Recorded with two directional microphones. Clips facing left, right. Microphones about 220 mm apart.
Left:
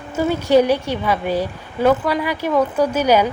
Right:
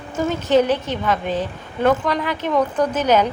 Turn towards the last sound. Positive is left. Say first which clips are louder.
# left 2 dB
turn(degrees=10)  # may be behind; listen again after turning